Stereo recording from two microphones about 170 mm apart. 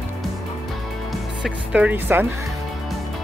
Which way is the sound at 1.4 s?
5° right (ahead or behind).